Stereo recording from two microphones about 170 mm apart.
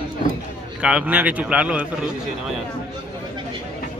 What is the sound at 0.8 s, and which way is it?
Speech, 5° right (ahead or behind).